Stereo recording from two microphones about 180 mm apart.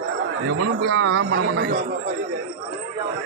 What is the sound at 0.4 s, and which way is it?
A man's voice, 75° right (ahead or behind).